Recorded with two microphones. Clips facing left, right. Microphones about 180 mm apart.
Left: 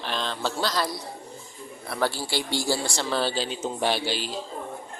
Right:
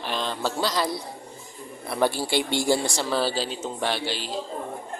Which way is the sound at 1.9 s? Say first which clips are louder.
Right 4 dB; 20° right (ahead or behind).